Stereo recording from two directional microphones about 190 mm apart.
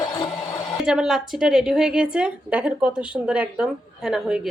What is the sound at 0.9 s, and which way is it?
A woman's voice, centre (ahead or behind).